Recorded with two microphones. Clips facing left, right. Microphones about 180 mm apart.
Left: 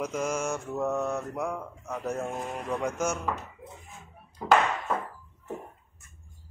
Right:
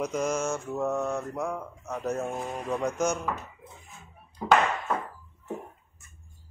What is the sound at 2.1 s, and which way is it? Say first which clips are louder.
Speech: right 1 dB; 10° right (ahead or behind).